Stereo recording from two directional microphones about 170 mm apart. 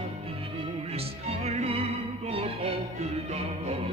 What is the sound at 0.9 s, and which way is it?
Music, 40° right (ahead or behind).